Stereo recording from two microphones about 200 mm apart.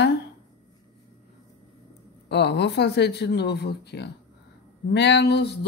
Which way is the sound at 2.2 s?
60° left (ahead or behind).